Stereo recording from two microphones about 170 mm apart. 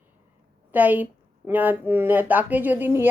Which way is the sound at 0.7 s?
10° right (ahead or behind).